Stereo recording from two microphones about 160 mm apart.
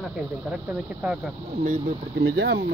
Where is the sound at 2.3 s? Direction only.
90° right.